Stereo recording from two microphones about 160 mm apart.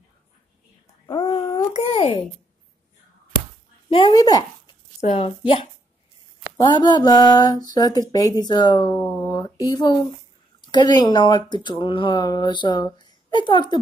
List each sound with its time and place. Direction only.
1.0 s babbling: 30° left (ahead or behind)
1.7 s a sound: 40° left (ahead or behind)
3.9 s speech: 30° left (ahead or behind)
5.0 s speech: 35° left (ahead or behind)
6.6 s speech: 25° left (ahead or behind)